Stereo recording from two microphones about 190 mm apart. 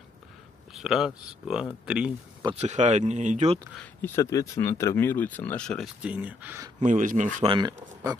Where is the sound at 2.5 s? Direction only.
40° right (ahead or behind).